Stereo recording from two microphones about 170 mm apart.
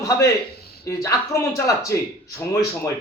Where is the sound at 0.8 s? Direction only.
20° left (ahead or behind).